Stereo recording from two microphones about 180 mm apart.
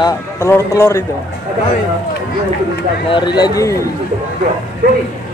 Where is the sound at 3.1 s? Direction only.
25° left (ahead or behind).